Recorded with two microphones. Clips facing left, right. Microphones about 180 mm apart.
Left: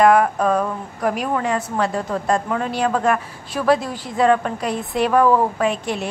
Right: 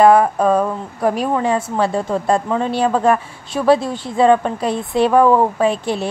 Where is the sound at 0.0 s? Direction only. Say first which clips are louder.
Right 3 dB; 30° right (ahead or behind).